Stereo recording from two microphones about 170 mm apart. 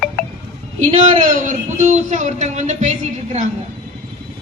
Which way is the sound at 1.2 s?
50° right (ahead or behind).